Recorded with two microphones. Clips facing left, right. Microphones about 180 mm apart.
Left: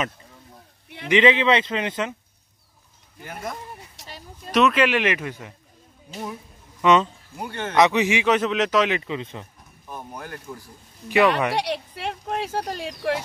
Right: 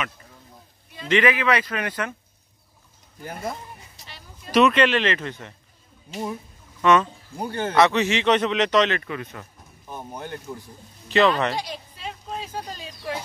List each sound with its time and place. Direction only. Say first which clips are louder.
1.0 s speech: left 3 dB; 20° left (ahead or behind)
3.2 s speech: right 2 dB; 35° right (ahead or behind)
4.5 s a man's voice: right 1 dB; centre (ahead or behind)
6.8 s speech: left 1 dB; 15° left (ahead or behind)
7.3 s speech: right 3 dB; 35° right (ahead or behind)
7.7 s a man's voice: left 1 dB; 15° left (ahead or behind)
8.9 s speech: left 2 dB; 20° left (ahead or behind)
10.1 s speech: right 5 dB; 25° right (ahead or behind)
11.1 s a man's voice: even; 10° left (ahead or behind)
11.5 s speech: left 6 dB; 75° left (ahead or behind)